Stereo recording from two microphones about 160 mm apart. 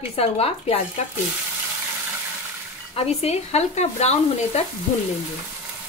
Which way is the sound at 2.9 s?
40° left (ahead or behind).